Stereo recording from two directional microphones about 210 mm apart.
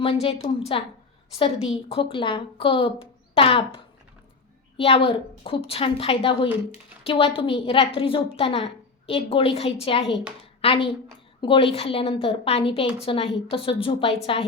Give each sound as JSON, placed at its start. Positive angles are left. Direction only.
{"t": 0.0, "sound": "a woman's voice", "side_deg": 25}
{"t": 4.8, "sound": "a woman's voice", "side_deg": 25}